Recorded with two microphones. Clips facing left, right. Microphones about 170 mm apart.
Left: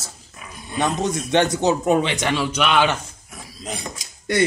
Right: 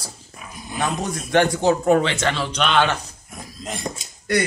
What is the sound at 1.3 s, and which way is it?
Speech, 20° left (ahead or behind).